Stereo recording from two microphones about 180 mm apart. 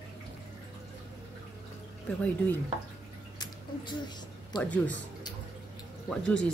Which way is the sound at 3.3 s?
25° left (ahead or behind).